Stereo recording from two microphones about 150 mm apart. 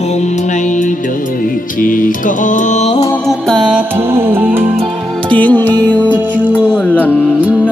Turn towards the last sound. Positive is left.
turn(degrees=10)  # may be behind; listen again after turning